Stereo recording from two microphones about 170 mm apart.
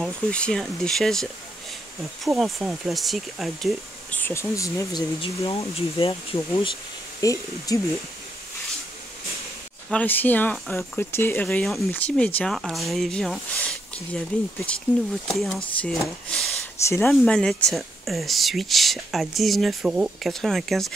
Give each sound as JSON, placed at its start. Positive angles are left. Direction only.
{"t": 0.0, "sound": "speech", "side_deg": 5}
{"t": 4.2, "sound": "speech", "side_deg": 15}
{"t": 5.2, "sound": "speech", "side_deg": 35}
{"t": 7.2, "sound": "speech", "side_deg": 20}
{"t": 9.8, "sound": "speech", "side_deg": 10}
{"t": 16.8, "sound": "speech", "side_deg": 15}
{"t": 17.1, "sound": "speech", "side_deg": 5}